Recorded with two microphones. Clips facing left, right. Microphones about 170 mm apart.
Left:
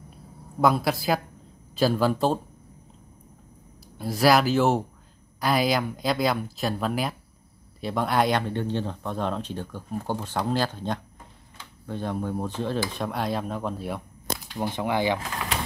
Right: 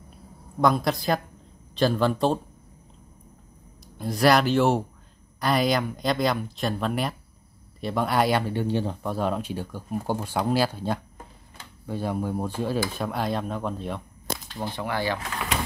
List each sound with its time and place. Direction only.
0.6 s speech: 5° left (ahead or behind)
4.0 s speech: centre (ahead or behind); by 15.1 s 20° left (ahead or behind)